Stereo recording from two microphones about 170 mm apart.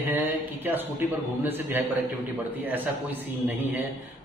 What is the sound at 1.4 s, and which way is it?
A man's voice, 10° right (ahead or behind).